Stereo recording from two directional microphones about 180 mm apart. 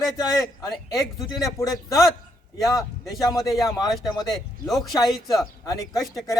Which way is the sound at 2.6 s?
20° left (ahead or behind).